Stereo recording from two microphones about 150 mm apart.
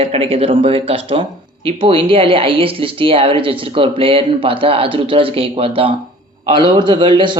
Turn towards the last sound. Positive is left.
turn(degrees=-30)  # may be behind; listen again after turning